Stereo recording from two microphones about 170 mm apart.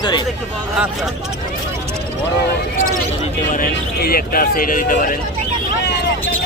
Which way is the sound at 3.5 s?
60° left (ahead or behind).